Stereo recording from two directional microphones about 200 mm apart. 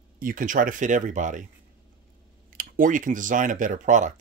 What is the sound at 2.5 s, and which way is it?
Speech, 40° right (ahead or behind).